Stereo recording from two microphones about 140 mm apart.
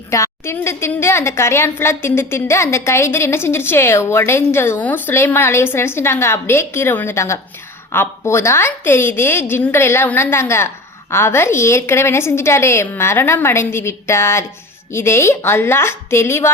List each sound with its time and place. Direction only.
0.1 s a woman's voice: 20° left (ahead or behind)